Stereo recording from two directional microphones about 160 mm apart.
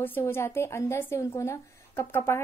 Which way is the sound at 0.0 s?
15° left (ahead or behind).